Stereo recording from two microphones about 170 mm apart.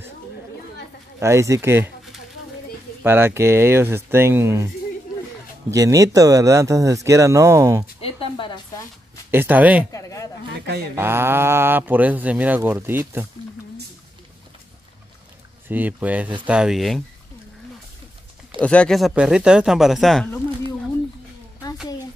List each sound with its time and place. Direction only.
1.2 s speech: 15° right (ahead or behind)
3.0 s speech: 15° right (ahead or behind)
5.7 s speech: 20° right (ahead or behind)
8.0 s a sound: 30° left (ahead or behind)
9.3 s speech: 10° right (ahead or behind)
9.9 s a sound: 20° left (ahead or behind)
11.0 s speech: 15° right (ahead or behind)
15.7 s speech: 10° right (ahead or behind)
18.6 s speech: 5° left (ahead or behind)